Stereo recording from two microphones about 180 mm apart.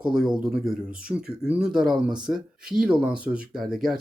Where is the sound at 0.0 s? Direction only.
5° right (ahead or behind).